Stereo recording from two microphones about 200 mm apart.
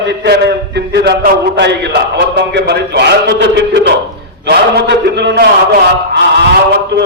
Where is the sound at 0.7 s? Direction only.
55° right (ahead or behind).